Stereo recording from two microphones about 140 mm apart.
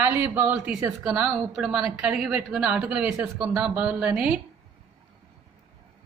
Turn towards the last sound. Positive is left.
turn(degrees=-10)  # may be behind; listen again after turning